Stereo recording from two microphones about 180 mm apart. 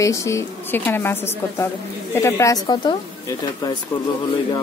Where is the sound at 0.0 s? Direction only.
15° left (ahead or behind).